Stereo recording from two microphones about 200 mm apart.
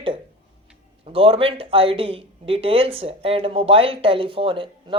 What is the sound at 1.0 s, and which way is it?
Speech, 30° right (ahead or behind).